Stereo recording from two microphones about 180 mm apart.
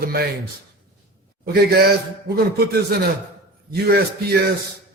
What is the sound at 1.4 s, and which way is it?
Speech, 60° right (ahead or behind).